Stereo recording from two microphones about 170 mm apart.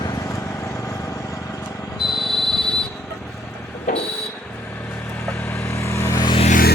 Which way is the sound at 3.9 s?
50° left (ahead or behind).